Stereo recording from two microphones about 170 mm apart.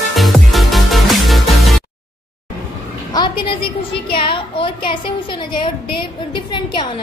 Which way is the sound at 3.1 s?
30° left (ahead or behind).